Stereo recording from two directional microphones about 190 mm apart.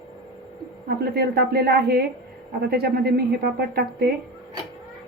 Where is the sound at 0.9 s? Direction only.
55° right (ahead or behind).